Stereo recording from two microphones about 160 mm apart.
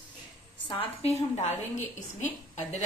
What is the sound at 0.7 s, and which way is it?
A woman's voice, 35° left (ahead or behind).